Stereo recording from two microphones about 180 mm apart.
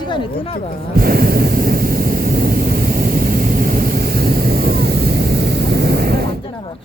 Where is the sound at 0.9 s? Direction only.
55° right (ahead or behind).